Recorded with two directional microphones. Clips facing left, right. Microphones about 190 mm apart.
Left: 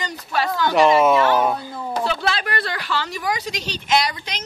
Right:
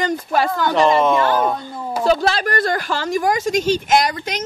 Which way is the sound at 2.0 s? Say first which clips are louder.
Right 9 dB; 40° right (ahead or behind).